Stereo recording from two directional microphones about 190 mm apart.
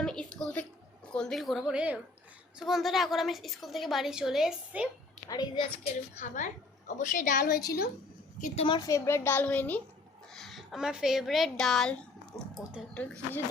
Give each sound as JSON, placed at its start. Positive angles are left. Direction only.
{"t": 0.0, "sound": "a sound", "side_deg": 5}
{"t": 1.1, "sound": "a woman's voice", "side_deg": 5}
{"t": 5.3, "sound": "a woman's voice", "side_deg": 20}
{"t": 6.1, "sound": "a woman's voice", "side_deg": 40}
{"t": 8.4, "sound": "a woman's voice", "side_deg": 30}
{"t": 12.3, "sound": "a sound", "side_deg": 10}
{"t": 12.9, "sound": "a woman's voice", "side_deg": 10}